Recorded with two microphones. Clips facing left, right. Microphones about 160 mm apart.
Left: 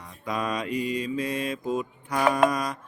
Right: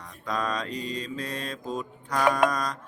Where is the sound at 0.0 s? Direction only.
10° left (ahead or behind).